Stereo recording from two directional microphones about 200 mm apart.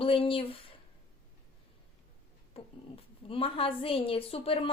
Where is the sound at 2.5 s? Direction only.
25° left (ahead or behind).